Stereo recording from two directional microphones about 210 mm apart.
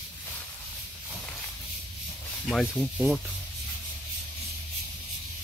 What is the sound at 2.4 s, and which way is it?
Speech, centre (ahead or behind).